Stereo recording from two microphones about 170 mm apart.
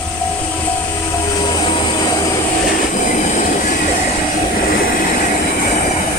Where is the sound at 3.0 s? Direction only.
50° left (ahead or behind).